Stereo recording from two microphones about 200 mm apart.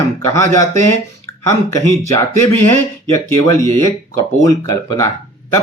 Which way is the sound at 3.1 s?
15° left (ahead or behind).